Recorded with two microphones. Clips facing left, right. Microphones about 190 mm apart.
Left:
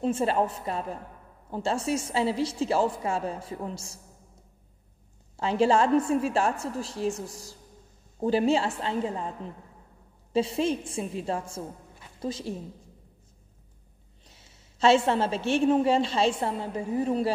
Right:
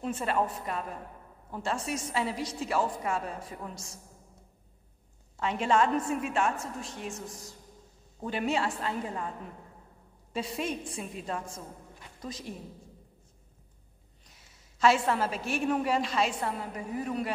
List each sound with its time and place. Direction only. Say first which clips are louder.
0.0 s a woman's voice: left 5 dB; 30° left (ahead or behind)
5.4 s a woman's voice: left 4 dB; 30° left (ahead or behind)
10.3 s a woman's voice: left 8 dB; 30° left (ahead or behind)
14.2 s a woman's voice: left 4 dB; 30° left (ahead or behind)